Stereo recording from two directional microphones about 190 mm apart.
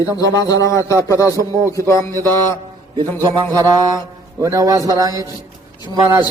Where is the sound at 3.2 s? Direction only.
15° right (ahead or behind).